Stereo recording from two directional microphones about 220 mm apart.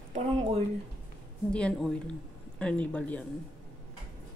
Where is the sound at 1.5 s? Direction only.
5° left (ahead or behind).